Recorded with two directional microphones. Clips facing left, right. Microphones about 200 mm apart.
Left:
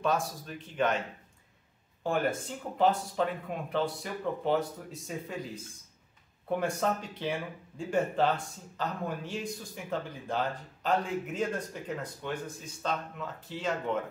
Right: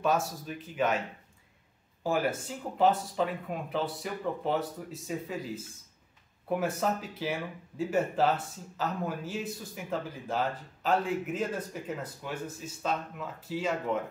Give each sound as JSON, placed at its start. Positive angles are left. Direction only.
{"t": 0.0, "sound": "speech", "side_deg": -5}
{"t": 2.0, "sound": "speech", "side_deg": -5}